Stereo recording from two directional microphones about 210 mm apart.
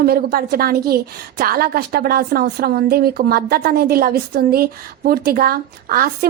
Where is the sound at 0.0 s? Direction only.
45° right (ahead or behind).